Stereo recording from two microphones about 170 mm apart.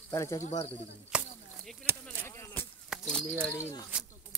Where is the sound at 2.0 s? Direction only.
15° left (ahead or behind).